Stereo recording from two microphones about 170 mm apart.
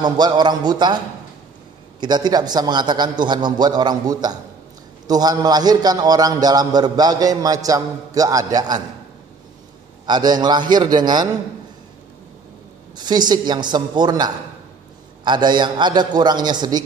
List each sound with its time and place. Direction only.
0.0 s a man's voice: 25° right (ahead or behind)
10.0 s a man's voice: 25° right (ahead or behind)
12.9 s a man's voice: 25° right (ahead or behind)